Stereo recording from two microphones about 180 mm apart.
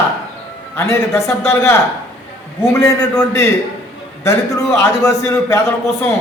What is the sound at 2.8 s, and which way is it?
A man's voice, 15° left (ahead or behind).